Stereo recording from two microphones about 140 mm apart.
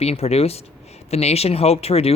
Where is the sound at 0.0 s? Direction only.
50° left (ahead or behind).